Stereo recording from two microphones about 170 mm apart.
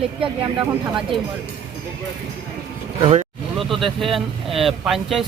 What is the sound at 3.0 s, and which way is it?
Speech, 40° right (ahead or behind).